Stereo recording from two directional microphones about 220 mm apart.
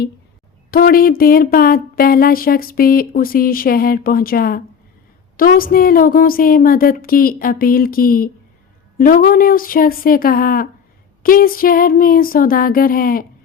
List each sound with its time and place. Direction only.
0.7 s speech: 40° left (ahead or behind)